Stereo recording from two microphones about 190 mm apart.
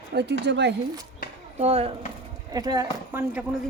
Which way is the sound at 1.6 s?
30° right (ahead or behind).